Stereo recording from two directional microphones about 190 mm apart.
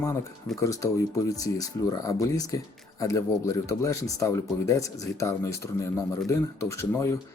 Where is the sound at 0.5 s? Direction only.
15° left (ahead or behind).